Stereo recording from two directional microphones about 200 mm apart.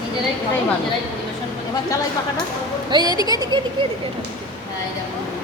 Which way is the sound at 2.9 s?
20° right (ahead or behind).